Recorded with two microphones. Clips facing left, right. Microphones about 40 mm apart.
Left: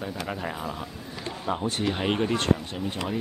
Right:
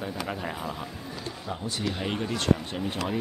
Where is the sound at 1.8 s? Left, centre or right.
Left.